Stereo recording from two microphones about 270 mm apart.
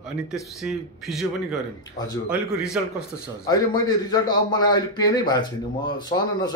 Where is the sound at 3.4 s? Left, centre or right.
Centre.